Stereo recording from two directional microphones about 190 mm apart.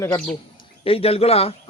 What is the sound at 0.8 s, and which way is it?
Speech, 30° left (ahead or behind).